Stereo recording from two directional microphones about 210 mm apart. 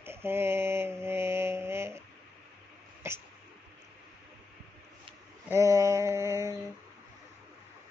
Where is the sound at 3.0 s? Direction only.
10° right (ahead or behind).